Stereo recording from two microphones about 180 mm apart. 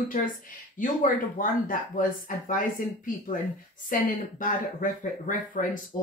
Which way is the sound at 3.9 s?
50° left (ahead or behind).